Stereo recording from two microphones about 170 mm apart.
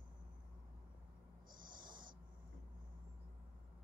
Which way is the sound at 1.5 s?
55° right (ahead or behind).